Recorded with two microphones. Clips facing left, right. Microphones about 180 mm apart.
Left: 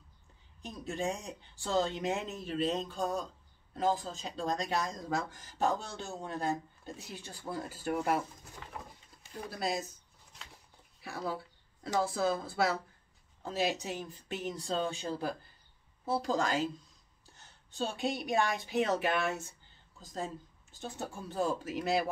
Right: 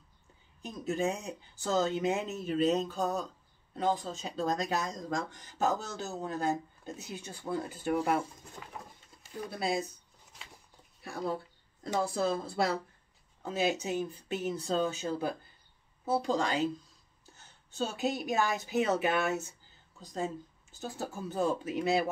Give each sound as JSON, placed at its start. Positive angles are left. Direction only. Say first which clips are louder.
{"t": 0.6, "sound": "speech", "louder": "right 5 dB", "side_deg": -5}
{"t": 9.5, "sound": "speech", "louder": "right 2 dB", "side_deg": 0}
{"t": 11.0, "sound": "a woman's voice", "louder": "right 3 dB", "side_deg": 0}